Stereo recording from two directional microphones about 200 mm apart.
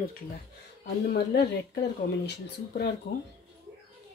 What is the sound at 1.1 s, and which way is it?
Speech, 55° left (ahead or behind).